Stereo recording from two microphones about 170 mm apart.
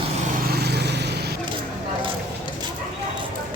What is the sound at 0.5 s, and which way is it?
Vehicle, 70° right (ahead or behind).